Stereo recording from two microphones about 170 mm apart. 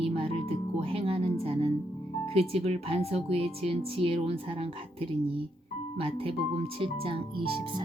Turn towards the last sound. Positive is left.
turn(degrees=-35)  # may be behind; listen again after turning